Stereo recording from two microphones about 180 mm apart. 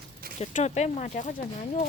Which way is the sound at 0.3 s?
40° left (ahead or behind).